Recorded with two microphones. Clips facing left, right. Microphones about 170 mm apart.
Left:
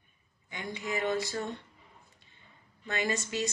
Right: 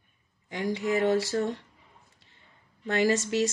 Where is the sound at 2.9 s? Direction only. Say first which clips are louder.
Right 8 dB; 75° right (ahead or behind).